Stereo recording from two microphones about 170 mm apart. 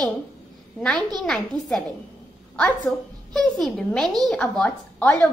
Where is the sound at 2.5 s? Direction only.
5° left (ahead or behind).